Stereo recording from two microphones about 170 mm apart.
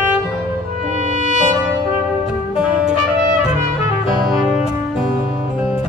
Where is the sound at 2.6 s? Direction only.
5° right (ahead or behind).